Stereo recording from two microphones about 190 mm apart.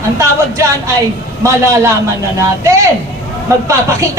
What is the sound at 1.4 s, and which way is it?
Male singing, 15° right (ahead or behind).